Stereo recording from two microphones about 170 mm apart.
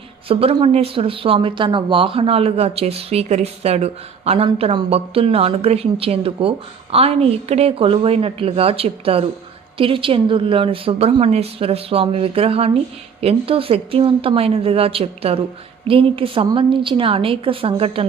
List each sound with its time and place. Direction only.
0.3 s speech: 35° right (ahead or behind)